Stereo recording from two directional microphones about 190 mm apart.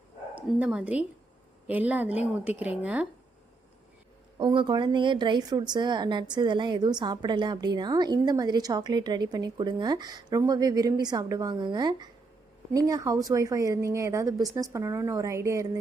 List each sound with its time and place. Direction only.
0.3 s speech: 5° right (ahead or behind)
4.4 s a woman's voice: 25° right (ahead or behind)